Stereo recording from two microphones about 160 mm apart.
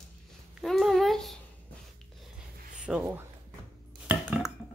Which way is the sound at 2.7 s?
5° right (ahead or behind).